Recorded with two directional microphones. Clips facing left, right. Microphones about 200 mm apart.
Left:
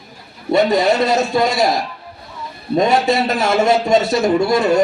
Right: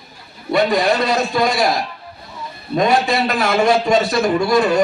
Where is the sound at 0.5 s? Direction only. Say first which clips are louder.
Left 2 dB; 25° left (ahead or behind).